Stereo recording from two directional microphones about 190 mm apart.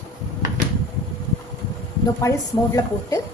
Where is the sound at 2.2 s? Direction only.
20° left (ahead or behind).